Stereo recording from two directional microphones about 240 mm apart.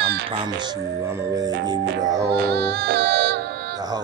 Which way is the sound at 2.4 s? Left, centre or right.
Right.